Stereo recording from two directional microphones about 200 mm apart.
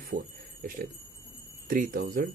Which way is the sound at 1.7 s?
45° right (ahead or behind).